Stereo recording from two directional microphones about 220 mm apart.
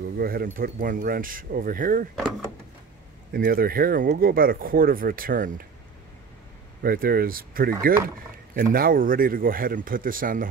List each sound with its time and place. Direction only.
0.2 s speech: 45° right (ahead or behind)
3.3 s speech: 40° right (ahead or behind)
6.8 s speech: 40° right (ahead or behind)